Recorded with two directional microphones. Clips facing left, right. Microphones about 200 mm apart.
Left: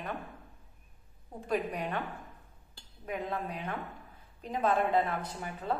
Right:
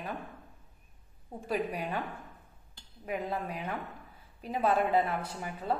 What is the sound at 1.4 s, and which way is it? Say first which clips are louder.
Speech: even; 5° right (ahead or behind).